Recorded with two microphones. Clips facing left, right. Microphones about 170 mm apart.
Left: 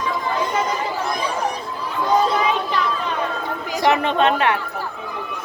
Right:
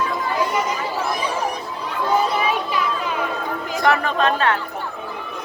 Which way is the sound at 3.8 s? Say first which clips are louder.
Left 2 dB; 25° left (ahead or behind).